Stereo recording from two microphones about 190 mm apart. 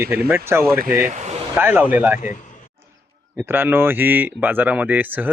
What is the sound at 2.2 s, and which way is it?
Speech, 40° left (ahead or behind).